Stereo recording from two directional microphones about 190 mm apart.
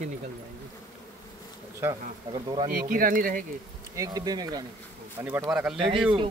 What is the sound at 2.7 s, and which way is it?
Speech, 45° right (ahead or behind).